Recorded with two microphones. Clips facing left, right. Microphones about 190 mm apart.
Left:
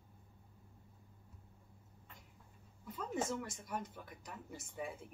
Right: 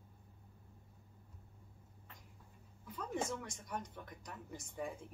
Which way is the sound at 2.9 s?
5° left (ahead or behind).